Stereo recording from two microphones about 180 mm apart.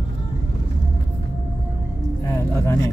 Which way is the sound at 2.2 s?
15° left (ahead or behind).